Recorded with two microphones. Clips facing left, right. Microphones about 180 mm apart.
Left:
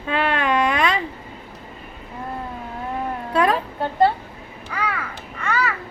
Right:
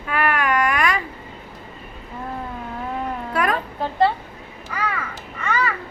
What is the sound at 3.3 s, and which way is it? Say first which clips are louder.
Cat: left 4 dB; 25° left (ahead or behind).